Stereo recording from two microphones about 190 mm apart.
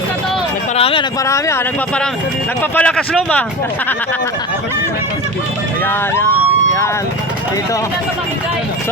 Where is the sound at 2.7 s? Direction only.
5° left (ahead or behind).